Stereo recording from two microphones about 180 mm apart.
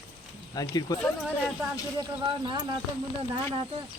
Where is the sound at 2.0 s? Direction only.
25° right (ahead or behind).